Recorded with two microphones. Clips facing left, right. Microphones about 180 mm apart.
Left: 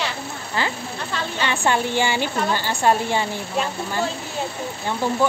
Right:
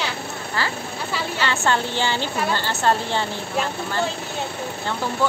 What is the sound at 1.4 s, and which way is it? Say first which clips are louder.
Speech: left 1 dB; 15° left (ahead or behind).